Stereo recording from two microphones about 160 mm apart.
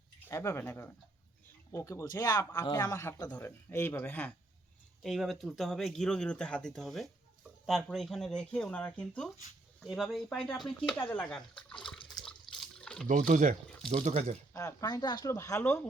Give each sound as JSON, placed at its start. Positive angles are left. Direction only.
{"t": 0.2, "sound": "speech", "side_deg": 15}
{"t": 11.5, "sound": "speech", "side_deg": 30}
{"t": 12.2, "sound": "water", "side_deg": 5}
{"t": 13.1, "sound": "speech", "side_deg": -55}
{"t": 14.5, "sound": "speech", "side_deg": 20}